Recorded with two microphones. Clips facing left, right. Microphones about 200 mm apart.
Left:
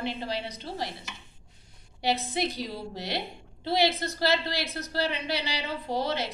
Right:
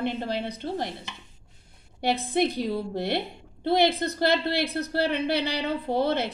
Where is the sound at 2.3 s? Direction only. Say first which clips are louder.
Right 6 dB; 55° right (ahead or behind).